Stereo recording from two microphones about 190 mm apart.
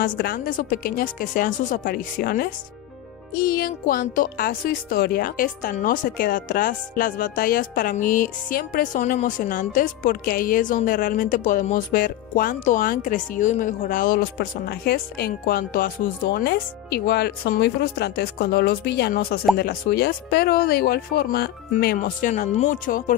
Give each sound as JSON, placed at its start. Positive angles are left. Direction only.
{"t": 0.0, "sound": "speech", "side_deg": 50}